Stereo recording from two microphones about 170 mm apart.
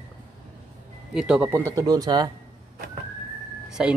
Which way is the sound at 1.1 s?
5° right (ahead or behind).